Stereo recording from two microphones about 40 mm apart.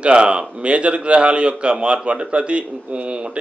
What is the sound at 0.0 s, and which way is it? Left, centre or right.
A man's voice, right.